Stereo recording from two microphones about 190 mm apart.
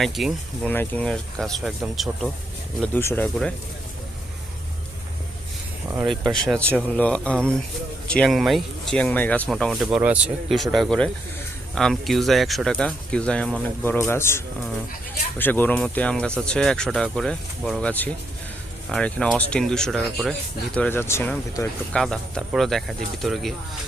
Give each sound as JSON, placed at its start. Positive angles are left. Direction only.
{"t": 0.0, "sound": "speech", "side_deg": 0}
{"t": 2.8, "sound": "speech", "side_deg": 10}
{"t": 6.1, "sound": "speech", "side_deg": 0}
{"t": 21.9, "sound": "speech", "side_deg": 5}